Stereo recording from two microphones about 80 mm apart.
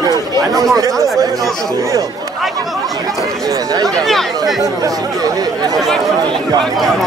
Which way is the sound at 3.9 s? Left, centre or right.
Centre.